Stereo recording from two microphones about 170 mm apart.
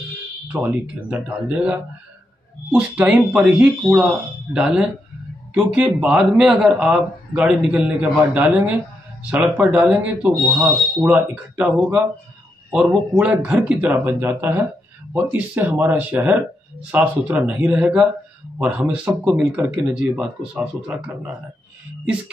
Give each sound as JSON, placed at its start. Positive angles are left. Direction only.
{"t": 0.5, "sound": "speech", "side_deg": -10}